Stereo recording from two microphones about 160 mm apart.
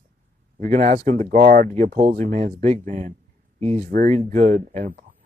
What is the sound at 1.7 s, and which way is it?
Speech, 50° right (ahead or behind).